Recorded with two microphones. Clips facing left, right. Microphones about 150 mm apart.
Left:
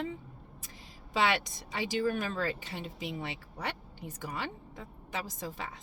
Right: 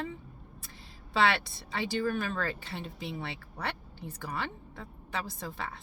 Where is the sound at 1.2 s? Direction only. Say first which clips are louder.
Right 2 dB; 15° left (ahead or behind).